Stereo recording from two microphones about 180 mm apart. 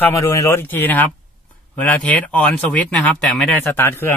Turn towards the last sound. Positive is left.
turn(degrees=10)  # may be behind; listen again after turning